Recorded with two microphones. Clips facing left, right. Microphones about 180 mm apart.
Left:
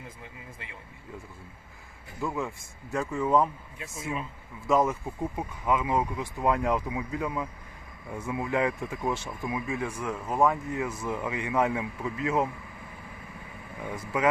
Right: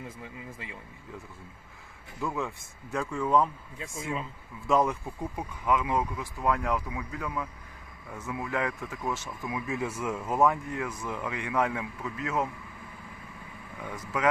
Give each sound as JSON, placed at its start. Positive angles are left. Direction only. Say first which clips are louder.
{"t": 2.2, "sound": "speech", "louder": "left 1 dB", "side_deg": 0}
{"t": 4.6, "sound": "speech", "louder": "left 1 dB", "side_deg": 20}
{"t": 9.6, "sound": "speech", "louder": "even", "side_deg": -5}
{"t": 13.8, "sound": "speech", "louder": "left 3 dB", "side_deg": 10}